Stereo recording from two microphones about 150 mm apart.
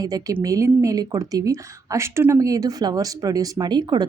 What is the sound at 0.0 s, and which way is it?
A woman's voice, 25° right (ahead or behind).